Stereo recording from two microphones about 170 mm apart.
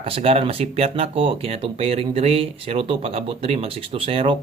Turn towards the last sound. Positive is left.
turn(degrees=-30)  # may be behind; listen again after turning